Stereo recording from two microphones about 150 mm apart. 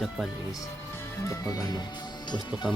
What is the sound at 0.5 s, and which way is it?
Speech, 20° left (ahead or behind).